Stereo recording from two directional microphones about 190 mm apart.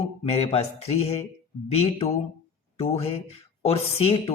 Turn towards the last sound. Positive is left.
turn(degrees=30)  # may be behind; listen again after turning